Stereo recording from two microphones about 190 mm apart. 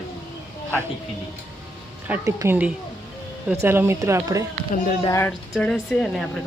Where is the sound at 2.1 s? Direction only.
15° right (ahead or behind).